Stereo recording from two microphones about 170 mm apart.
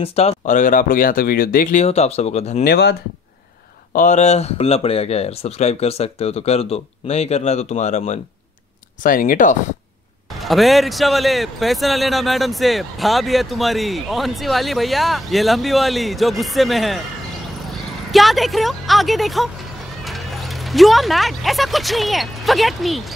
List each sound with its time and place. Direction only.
0.0 s speech: 35° left (ahead or behind)
2.6 s speech: 75° left (ahead or behind)
3.9 s speech: 45° left (ahead or behind)
9.0 s speech: 55° left (ahead or behind)
10.4 s a man's voice: centre (ahead or behind)
18.1 s a man's voice: centre (ahead or behind)